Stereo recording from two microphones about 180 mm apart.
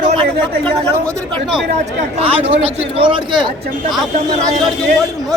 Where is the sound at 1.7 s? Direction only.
35° right (ahead or behind).